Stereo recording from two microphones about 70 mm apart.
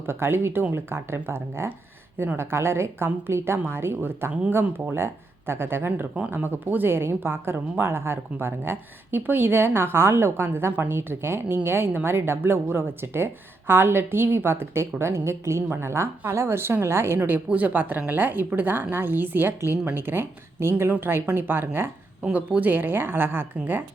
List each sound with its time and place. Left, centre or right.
0.1 s a woman's voice: right